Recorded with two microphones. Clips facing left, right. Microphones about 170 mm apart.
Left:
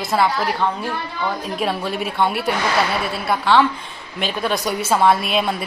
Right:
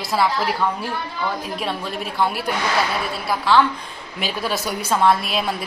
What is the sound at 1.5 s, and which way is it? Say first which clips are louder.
A woman's voice: left 4 dB; centre (ahead or behind).